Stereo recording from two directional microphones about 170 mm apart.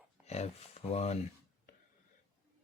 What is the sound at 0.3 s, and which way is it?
Speech, 40° left (ahead or behind).